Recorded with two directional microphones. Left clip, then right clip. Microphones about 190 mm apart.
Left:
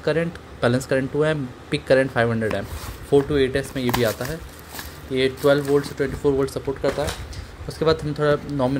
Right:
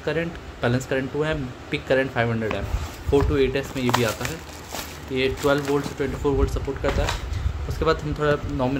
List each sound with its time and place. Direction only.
0.0 s speech: 25° left (ahead or behind)
5.1 s speech: 25° left (ahead or behind)